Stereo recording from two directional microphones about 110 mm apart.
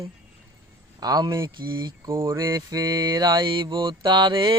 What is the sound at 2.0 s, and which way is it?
Speech, 25° right (ahead or behind).